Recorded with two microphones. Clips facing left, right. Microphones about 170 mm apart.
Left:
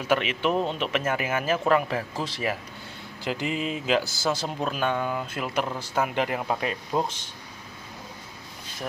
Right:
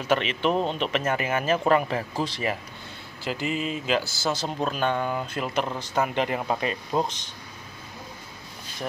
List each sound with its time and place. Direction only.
0.0 s speech: 10° left (ahead or behind)
3.3 s speech: 15° left (ahead or behind)